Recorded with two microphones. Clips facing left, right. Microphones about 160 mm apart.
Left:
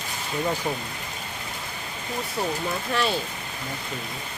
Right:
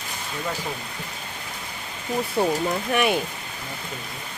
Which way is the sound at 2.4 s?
30° right (ahead or behind).